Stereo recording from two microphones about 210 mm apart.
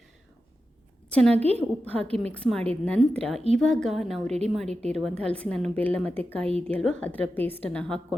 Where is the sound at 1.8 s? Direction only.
5° left (ahead or behind).